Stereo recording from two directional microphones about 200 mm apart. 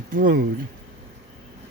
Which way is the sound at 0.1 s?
45° right (ahead or behind).